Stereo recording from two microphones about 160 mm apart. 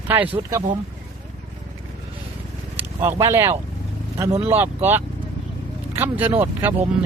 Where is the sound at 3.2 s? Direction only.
20° right (ahead or behind).